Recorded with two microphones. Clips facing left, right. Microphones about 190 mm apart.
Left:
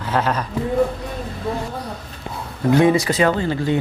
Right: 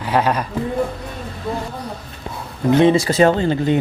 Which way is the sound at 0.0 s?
15° right (ahead or behind).